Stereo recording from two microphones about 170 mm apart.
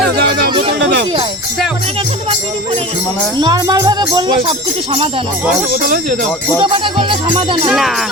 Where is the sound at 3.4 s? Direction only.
25° right (ahead or behind).